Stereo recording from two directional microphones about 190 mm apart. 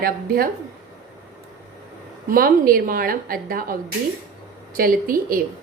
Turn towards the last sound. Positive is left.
turn(degrees=-50)  # may be behind; listen again after turning